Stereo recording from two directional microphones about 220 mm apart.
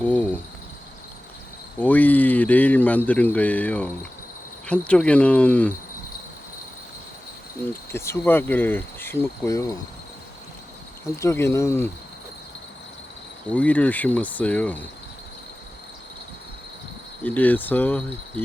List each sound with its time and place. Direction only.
0.0 s cricket: 5° left (ahead or behind)
1.8 s speech: 5° left (ahead or behind)
7.7 s speech: 10° left (ahead or behind)
11.2 s speech: 10° left (ahead or behind)
13.5 s speech: 5° left (ahead or behind)
17.2 s speech: 10° left (ahead or behind)